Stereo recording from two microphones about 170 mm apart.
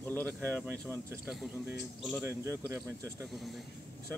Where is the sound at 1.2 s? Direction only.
Centre (ahead or behind); by 3.3 s 15° right (ahead or behind).